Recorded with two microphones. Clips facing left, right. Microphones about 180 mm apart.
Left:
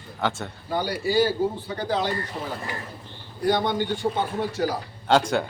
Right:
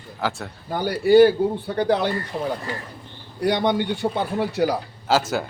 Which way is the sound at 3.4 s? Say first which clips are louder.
Right 2 dB; 70° right (ahead or behind).